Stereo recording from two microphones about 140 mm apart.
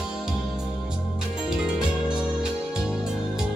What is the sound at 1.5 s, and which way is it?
Music, 5° right (ahead or behind).